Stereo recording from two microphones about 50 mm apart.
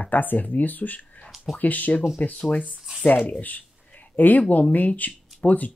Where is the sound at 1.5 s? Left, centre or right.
Left.